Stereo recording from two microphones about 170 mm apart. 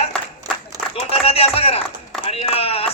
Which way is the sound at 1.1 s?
35° left (ahead or behind).